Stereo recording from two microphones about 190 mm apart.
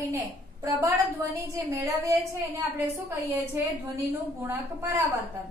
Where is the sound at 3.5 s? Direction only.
10° right (ahead or behind).